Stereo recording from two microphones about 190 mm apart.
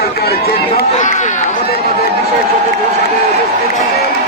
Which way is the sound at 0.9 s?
40° left (ahead or behind).